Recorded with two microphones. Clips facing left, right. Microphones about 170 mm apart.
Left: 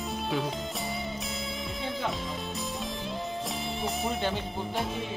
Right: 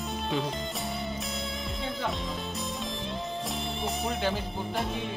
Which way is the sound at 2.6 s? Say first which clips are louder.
Even; centre (ahead or behind).